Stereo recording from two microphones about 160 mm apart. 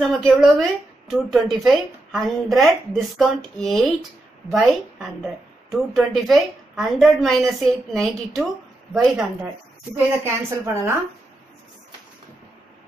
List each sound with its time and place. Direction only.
0.0 s speech: centre (ahead or behind)
9.9 s a woman's voice: 15° right (ahead or behind)